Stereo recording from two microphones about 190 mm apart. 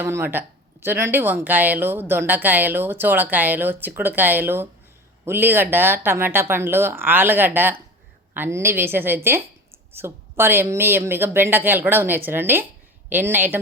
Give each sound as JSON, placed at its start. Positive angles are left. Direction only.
{"t": 0.0, "sound": "speech", "side_deg": -10}